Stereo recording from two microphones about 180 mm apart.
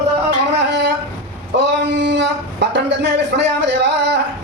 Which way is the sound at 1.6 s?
80° right.